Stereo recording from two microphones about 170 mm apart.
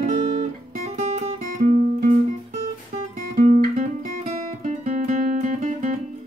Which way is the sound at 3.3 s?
45° right (ahead or behind).